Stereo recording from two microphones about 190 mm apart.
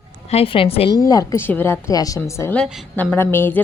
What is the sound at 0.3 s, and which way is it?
Speech, 30° left (ahead or behind).